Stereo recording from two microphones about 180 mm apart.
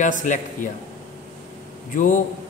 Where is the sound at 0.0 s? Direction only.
45° left (ahead or behind).